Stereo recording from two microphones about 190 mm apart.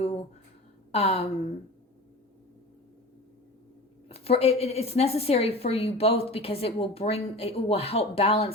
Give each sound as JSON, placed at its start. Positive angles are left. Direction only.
{"t": 0.9, "sound": "speech", "side_deg": 35}
{"t": 4.1, "sound": "a woman's voice", "side_deg": 30}